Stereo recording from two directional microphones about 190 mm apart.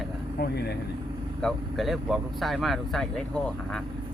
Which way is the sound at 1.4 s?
Centre (ahead or behind).